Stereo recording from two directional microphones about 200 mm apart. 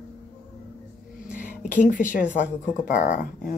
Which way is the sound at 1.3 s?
10° right (ahead or behind).